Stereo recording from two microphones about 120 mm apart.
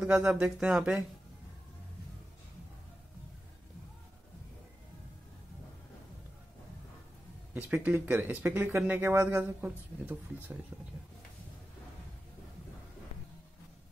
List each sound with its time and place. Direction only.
0.0 s speech: 10° right (ahead or behind)
7.5 s speech: 15° right (ahead or behind)